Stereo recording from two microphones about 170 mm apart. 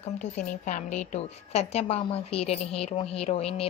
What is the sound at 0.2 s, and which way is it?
Speech, 50° left (ahead or behind).